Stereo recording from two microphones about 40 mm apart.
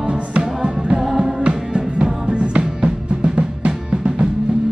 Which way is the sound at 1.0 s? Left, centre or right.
Centre.